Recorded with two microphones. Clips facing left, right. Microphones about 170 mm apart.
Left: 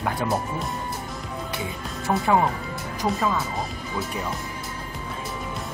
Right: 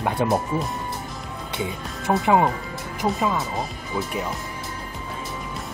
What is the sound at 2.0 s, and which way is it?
Speech, 20° right (ahead or behind).